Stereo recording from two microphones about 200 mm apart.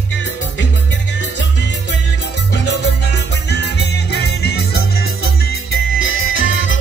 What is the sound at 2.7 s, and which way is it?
Music, 55° left (ahead or behind).